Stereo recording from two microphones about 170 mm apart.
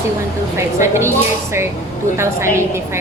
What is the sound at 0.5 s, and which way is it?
Speech, 15° right (ahead or behind).